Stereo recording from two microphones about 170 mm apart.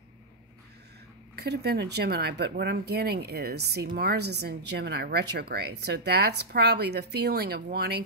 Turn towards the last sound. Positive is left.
turn(degrees=-70)  # may be behind; listen again after turning